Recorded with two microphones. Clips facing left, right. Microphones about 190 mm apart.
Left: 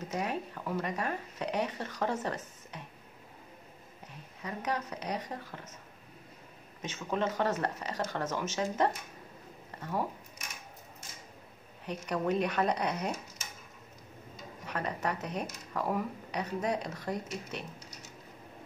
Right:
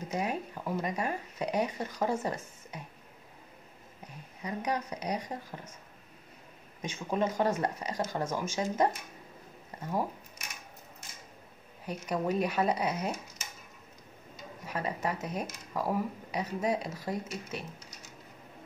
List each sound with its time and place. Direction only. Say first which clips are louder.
0.1 s speech: right 2 dB; 15° right (ahead or behind)
4.4 s speech: right 2 dB; 15° right (ahead or behind)
6.8 s speech: right 2 dB; 10° right (ahead or behind)
11.8 s speech: even; 10° right (ahead or behind)
14.7 s speech: right 1 dB; 10° right (ahead or behind)